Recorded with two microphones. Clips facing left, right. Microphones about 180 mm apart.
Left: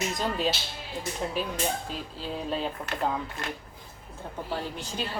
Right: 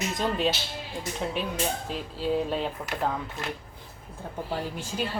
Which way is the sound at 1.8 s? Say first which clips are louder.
Right 6 dB; centre (ahead or behind).